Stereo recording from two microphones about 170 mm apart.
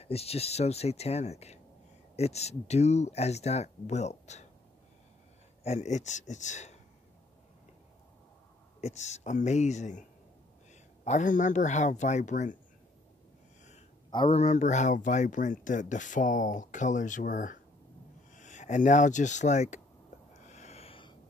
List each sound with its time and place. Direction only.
0.0 s speech: 35° left (ahead or behind)
5.6 s speech: 40° left (ahead or behind)
8.8 s speech: 40° left (ahead or behind)
14.1 s speech: 35° left (ahead or behind)
20.4 s a sound: 40° left (ahead or behind)